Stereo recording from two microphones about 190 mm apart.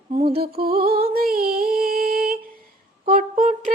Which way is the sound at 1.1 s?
50° right (ahead or behind).